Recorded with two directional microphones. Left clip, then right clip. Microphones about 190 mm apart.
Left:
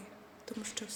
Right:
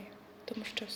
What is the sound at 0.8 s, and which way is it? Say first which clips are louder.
Speech: right 5 dB; 20° left (ahead or behind).